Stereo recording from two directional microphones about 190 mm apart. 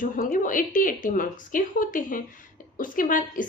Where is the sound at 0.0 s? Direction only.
45° left (ahead or behind).